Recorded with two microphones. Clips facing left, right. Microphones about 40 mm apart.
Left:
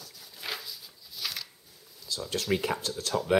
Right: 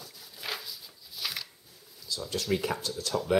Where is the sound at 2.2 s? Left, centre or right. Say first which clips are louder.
Left 1 dB; centre.